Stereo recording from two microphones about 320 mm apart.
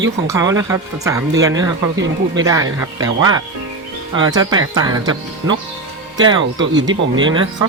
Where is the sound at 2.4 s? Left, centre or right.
Centre.